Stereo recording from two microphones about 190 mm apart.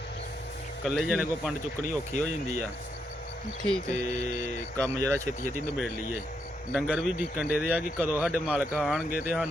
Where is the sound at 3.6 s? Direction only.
5° left (ahead or behind).